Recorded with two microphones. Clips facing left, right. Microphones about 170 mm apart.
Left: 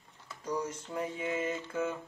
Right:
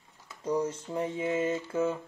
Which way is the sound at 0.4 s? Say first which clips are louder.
Right 6 dB; 30° right (ahead or behind).